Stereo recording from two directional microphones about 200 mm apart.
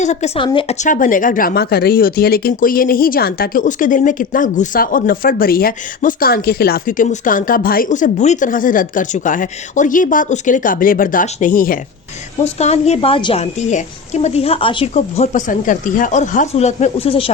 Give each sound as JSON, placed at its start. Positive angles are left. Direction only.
{"t": 0.0, "sound": "a woman's voice", "side_deg": 35}
{"t": 12.5, "sound": "a woman's voice", "side_deg": 30}